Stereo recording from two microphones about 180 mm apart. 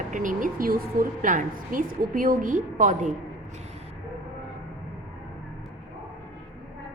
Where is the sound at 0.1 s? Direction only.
45° right (ahead or behind).